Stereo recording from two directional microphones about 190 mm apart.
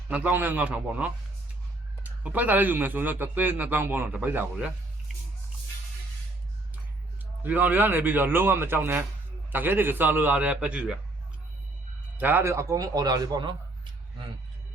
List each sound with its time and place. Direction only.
0.1 s a man's voice: 10° right (ahead or behind)
2.2 s a man's voice: 10° right (ahead or behind)
7.4 s a man's voice: 10° right (ahead or behind)
12.1 s a man's voice: 10° right (ahead or behind)